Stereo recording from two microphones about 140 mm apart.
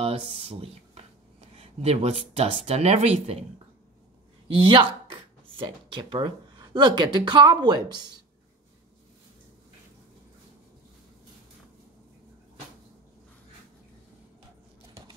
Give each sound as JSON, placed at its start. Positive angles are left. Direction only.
{"t": 0.4, "sound": "speech", "side_deg": -45}
{"t": 4.5, "sound": "speech", "side_deg": -40}